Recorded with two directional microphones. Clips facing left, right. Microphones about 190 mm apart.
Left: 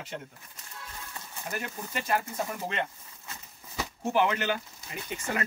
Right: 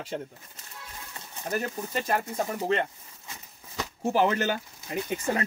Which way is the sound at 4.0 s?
35° right (ahead or behind).